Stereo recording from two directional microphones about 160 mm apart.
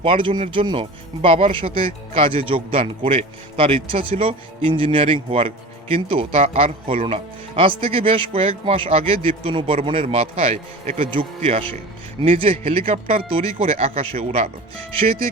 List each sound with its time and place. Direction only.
0.0 s speech: 35° right (ahead or behind)